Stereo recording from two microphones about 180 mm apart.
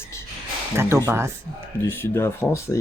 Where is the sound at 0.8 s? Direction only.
15° right (ahead or behind).